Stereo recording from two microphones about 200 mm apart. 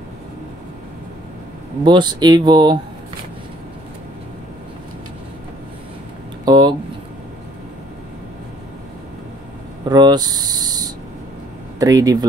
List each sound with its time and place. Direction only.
1.9 s speech: 20° right (ahead or behind)
6.4 s a sound: 20° right (ahead or behind)
9.8 s speech: 20° right (ahead or behind)